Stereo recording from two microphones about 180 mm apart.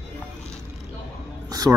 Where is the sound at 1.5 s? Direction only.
20° right (ahead or behind).